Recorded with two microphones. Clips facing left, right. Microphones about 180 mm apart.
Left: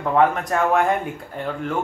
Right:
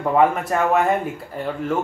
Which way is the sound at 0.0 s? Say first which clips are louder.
Right 1 dB; 10° right (ahead or behind).